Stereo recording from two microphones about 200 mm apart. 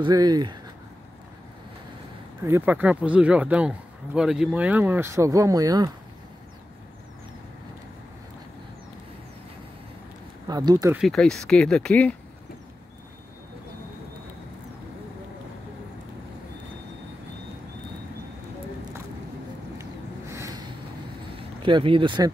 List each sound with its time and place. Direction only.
0.0 s speech: 20° right (ahead or behind)
2.4 s a man's voice: 10° right (ahead or behind)
10.4 s speech: 20° right (ahead or behind)
11.0 s speech: centre (ahead or behind)
19.8 s a sound: 15° right (ahead or behind)
21.4 s speech: 25° right (ahead or behind)